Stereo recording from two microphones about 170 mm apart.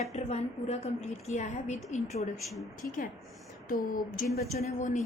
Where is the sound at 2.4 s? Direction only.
Centre (ahead or behind).